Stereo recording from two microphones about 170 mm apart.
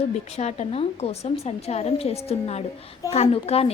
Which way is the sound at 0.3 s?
40° left (ahead or behind).